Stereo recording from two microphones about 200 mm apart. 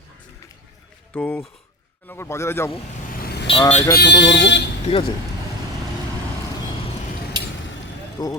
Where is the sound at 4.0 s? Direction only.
60° left (ahead or behind).